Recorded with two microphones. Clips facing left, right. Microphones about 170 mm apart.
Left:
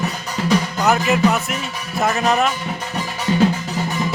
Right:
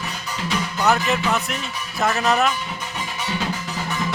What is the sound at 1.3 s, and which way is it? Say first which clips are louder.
Speech: left 3 dB; 5° left (ahead or behind).